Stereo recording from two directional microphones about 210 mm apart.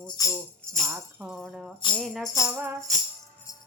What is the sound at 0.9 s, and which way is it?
Tambourine, 5° right (ahead or behind).